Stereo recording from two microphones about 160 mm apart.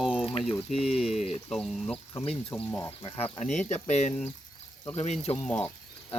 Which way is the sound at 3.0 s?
35° left (ahead or behind).